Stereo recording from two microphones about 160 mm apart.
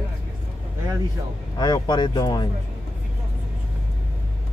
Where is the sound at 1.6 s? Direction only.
25° left (ahead or behind).